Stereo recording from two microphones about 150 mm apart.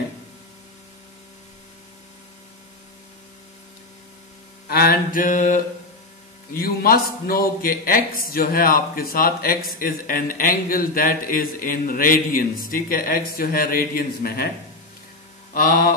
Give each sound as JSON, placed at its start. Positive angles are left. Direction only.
{"t": 4.6, "sound": "mantra", "side_deg": 90}
{"t": 6.5, "sound": "a man's voice", "side_deg": 80}
{"t": 15.5, "sound": "a man's voice", "side_deg": 75}